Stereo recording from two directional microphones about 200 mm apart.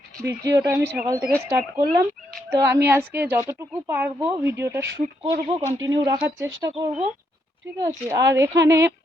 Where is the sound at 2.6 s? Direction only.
15° right (ahead or behind).